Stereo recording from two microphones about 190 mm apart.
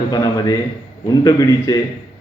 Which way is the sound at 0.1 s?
20° left (ahead or behind).